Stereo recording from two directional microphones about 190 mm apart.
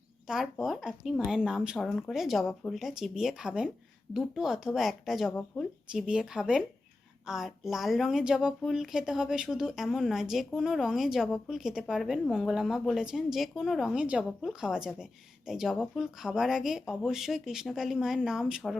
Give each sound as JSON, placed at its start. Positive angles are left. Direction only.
{"t": 0.5, "sound": "speech", "side_deg": 0}
{"t": 5.3, "sound": "speech", "side_deg": 10}
{"t": 5.9, "sound": "speech", "side_deg": -5}